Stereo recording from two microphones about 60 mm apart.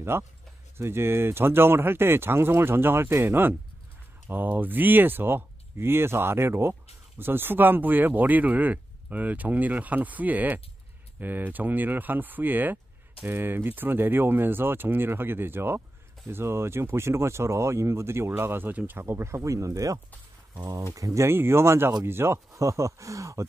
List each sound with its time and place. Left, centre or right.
0.1 s speech: right
21.3 s speech: right
22.5 s speech: right